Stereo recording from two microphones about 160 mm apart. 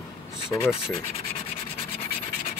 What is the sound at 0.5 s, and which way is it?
Rub, 30° left (ahead or behind).